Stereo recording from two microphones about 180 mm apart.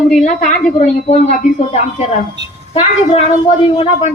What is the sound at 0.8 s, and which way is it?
Speech, 40° left (ahead or behind).